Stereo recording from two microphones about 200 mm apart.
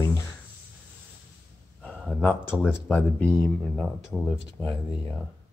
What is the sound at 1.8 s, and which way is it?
Speech, centre (ahead or behind).